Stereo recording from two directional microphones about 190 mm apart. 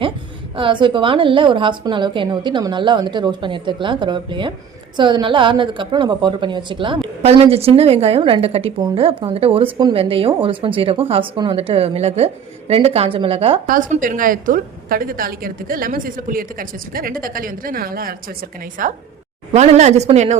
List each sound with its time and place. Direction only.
0.5 s a woman's voice: 25° right (ahead or behind)
13.7 s a woman's voice: 45° right (ahead or behind)